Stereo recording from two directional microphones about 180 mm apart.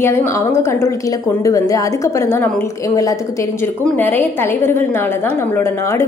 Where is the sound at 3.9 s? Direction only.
10° left (ahead or behind).